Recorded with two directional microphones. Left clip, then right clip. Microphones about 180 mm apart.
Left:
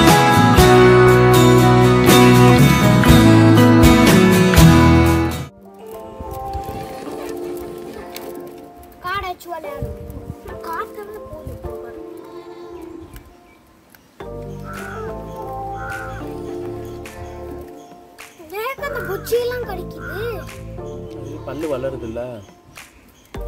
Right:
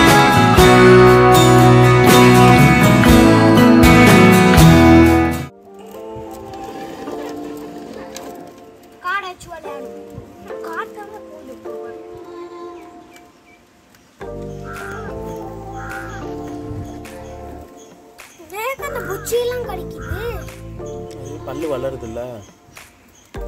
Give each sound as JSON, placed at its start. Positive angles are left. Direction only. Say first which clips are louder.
{"t": 0.0, "sound": "music", "louder": "right 1 dB", "side_deg": 0}
{"t": 9.0, "sound": "a sound", "louder": "right 1 dB", "side_deg": 35}
{"t": 18.5, "sound": "music", "louder": "right 1 dB", "side_deg": 40}
{"t": 21.1, "sound": "music", "louder": "right 1 dB", "side_deg": 5}